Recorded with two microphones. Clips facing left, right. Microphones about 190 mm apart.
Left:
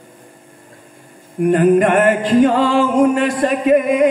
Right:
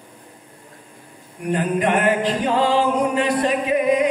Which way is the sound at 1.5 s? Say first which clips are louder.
Left 8 dB; 50° left (ahead or behind).